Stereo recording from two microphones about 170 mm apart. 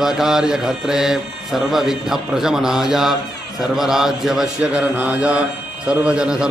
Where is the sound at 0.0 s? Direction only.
5° right (ahead or behind).